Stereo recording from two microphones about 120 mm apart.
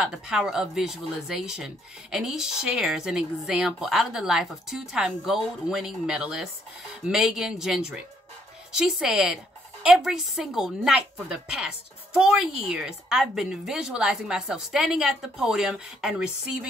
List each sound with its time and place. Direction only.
0.0 s a woman's voice: 5° right (ahead or behind)